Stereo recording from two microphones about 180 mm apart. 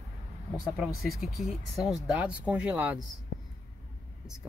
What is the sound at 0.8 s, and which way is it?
Speech, centre (ahead or behind).